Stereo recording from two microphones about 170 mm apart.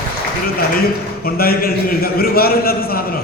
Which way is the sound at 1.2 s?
60° left (ahead or behind).